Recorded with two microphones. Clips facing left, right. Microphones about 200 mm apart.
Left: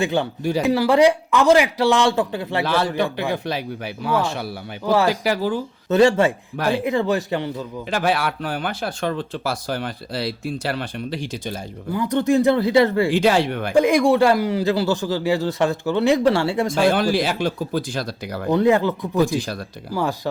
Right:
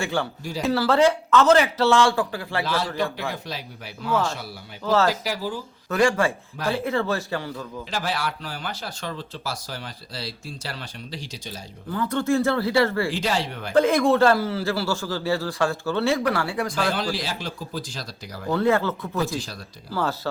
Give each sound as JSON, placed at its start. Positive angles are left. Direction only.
{"t": 0.0, "sound": "speech", "side_deg": 20}
{"t": 2.6, "sound": "speech", "side_deg": 60}
{"t": 4.9, "sound": "speech", "side_deg": 15}
{"t": 5.2, "sound": "speech", "side_deg": 60}
{"t": 5.9, "sound": "speech", "side_deg": 25}
{"t": 7.9, "sound": "speech", "side_deg": 60}
{"t": 11.9, "sound": "speech", "side_deg": 15}
{"t": 13.1, "sound": "speech", "side_deg": 60}
{"t": 13.7, "sound": "speech", "side_deg": 15}
{"t": 16.9, "sound": "speech", "side_deg": 55}
{"t": 18.4, "sound": "speech", "side_deg": 20}